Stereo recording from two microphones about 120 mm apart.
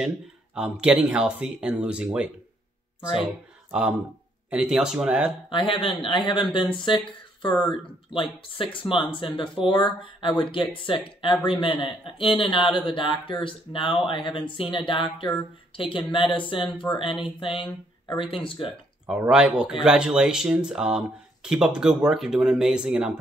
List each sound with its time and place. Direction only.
0.6 s speech: 10° right (ahead or behind)
3.7 s speech: 10° right (ahead or behind)
5.5 s speech: 45° left (ahead or behind)
19.0 s speech: 10° right (ahead or behind)